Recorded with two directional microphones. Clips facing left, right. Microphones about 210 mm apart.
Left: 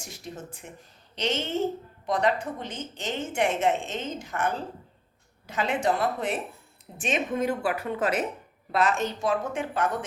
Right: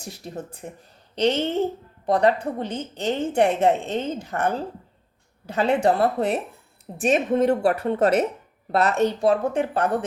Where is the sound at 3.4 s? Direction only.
35° right (ahead or behind).